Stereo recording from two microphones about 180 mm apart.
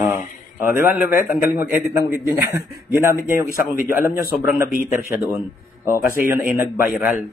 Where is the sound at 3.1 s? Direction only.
50° left (ahead or behind).